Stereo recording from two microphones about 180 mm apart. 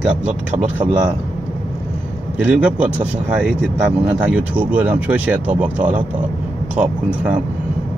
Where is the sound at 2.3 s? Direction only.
5° right (ahead or behind).